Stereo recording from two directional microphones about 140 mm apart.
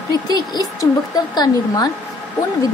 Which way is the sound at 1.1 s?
30° left (ahead or behind).